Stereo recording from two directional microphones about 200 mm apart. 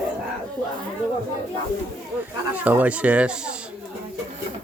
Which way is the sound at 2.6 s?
5° right (ahead or behind).